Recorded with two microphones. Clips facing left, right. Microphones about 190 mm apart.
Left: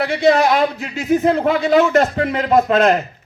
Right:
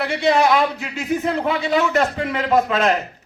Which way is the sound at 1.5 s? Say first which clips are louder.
Left 5 dB; 40° left (ahead or behind).